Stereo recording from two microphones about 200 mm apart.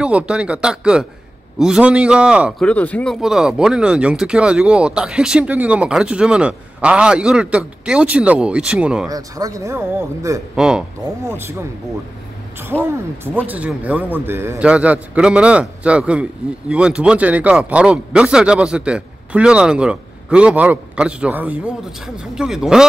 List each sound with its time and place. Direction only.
0.0 s a man's voice: 5° right (ahead or behind)
2.7 s a man's voice: 5° left (ahead or behind)
9.1 s a man's voice: 15° right (ahead or behind)
12.5 s a man's voice: 10° right (ahead or behind)